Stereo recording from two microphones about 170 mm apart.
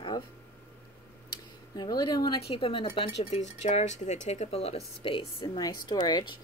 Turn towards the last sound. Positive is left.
turn(degrees=25)  # may be behind; listen again after turning